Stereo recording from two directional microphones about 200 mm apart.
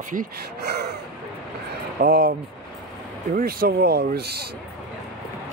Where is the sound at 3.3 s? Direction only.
45° right (ahead or behind).